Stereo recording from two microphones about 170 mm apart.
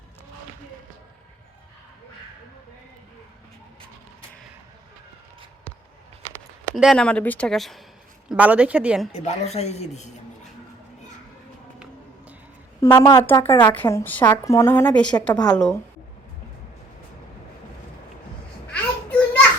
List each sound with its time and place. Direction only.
6.7 s speech: centre (ahead or behind)
9.1 s a woman's voice: 40° left (ahead or behind)
12.8 s a woman's voice: 20° left (ahead or behind)
18.7 s children playing: 10° left (ahead or behind)